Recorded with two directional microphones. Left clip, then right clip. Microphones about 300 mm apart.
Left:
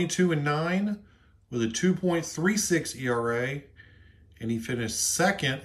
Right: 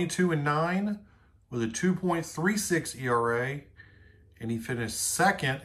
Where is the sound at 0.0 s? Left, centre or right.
Centre.